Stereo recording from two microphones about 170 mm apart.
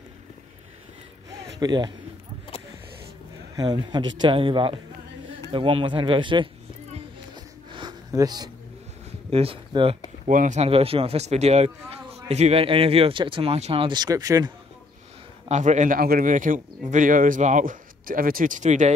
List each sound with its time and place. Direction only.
1.6 s speech: 25° right (ahead or behind)
3.5 s speech: 25° right (ahead or behind)
7.7 s a sound: 25° right (ahead or behind)
9.3 s speech: 35° right (ahead or behind)
10.2 s speech: 45° right (ahead or behind); by 14.5 s 20° right (ahead or behind)
15.4 s speech: 45° right (ahead or behind)